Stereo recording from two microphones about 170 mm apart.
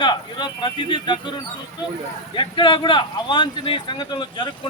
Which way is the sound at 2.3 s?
30° left (ahead or behind).